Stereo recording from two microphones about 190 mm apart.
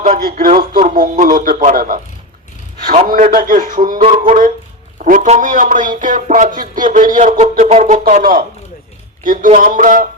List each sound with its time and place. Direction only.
0.0 s a man's voice: 45° right (ahead or behind)
3.1 s a man's voice: 50° right (ahead or behind)